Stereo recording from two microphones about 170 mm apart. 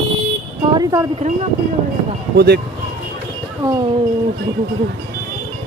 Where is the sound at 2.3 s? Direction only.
70° right (ahead or behind).